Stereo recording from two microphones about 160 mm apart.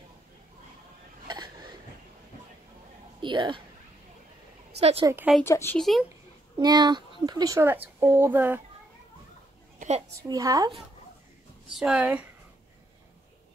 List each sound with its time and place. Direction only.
1.2 s a sound: 25° right (ahead or behind)
3.2 s speech: 30° right (ahead or behind)
4.7 s a woman's voice: 40° right (ahead or behind)
5.0 s speech: 15° right (ahead or behind)
5.4 s speech: 15° left (ahead or behind)
5.8 s speech: centre (ahead or behind)
6.6 s speech: 25° right (ahead or behind)
9.8 s a sound: 45° right (ahead or behind)
10.2 s a woman's voice: 20° right (ahead or behind)
11.7 s speech: 5° right (ahead or behind)